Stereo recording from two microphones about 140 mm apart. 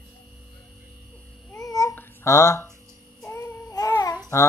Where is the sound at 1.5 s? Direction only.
25° left (ahead or behind).